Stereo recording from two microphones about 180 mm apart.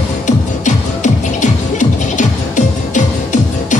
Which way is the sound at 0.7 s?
40° left (ahead or behind).